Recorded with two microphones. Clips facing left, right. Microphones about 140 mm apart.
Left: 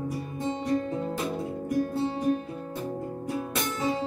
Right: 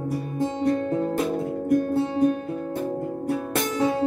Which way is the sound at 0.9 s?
50° right (ahead or behind).